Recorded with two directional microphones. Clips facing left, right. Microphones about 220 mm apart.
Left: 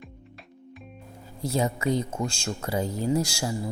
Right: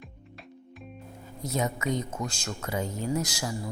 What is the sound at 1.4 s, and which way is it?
A woman's voice, 30° left (ahead or behind).